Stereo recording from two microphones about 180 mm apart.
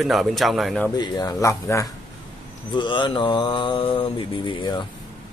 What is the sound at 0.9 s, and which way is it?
Speech, 20° left (ahead or behind).